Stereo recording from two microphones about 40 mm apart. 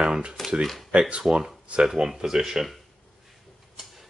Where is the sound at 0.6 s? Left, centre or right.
Centre.